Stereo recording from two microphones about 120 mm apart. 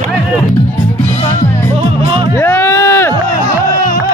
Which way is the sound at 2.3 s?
20° left (ahead or behind).